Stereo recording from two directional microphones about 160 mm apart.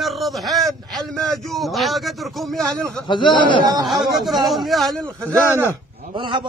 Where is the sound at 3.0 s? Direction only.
30° left (ahead or behind).